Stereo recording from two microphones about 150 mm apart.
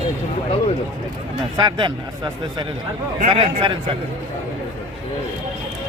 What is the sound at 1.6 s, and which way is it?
Speech, 30° right (ahead or behind).